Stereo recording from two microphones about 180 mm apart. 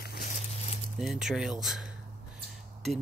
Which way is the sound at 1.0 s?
Centre (ahead or behind).